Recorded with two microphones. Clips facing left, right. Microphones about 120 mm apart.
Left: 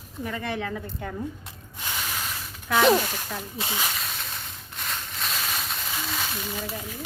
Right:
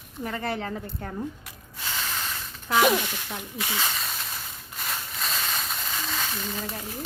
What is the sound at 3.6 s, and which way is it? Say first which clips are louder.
Speech: right 1 dB; 20° left (ahead or behind).